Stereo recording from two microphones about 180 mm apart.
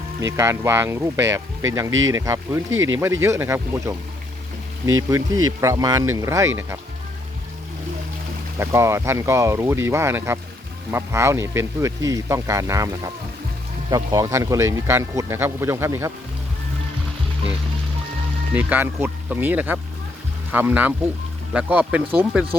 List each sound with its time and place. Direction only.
0.3 s speech: 15° right (ahead or behind)
1.9 s speech: 90° right
2.1 s speech: 15° right (ahead or behind)
2.7 s speech: 90° right
3.0 s speech: 15° right (ahead or behind)
8.5 s speech: 15° right (ahead or behind)
13.9 s speech: 20° right (ahead or behind)
18.5 s speech: 10° right (ahead or behind)